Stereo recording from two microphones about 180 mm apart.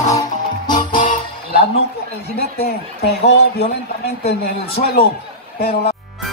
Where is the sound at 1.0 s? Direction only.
45° left (ahead or behind).